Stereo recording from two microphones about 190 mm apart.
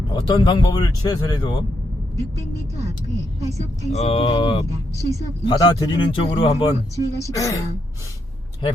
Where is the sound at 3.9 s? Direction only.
35° left (ahead or behind).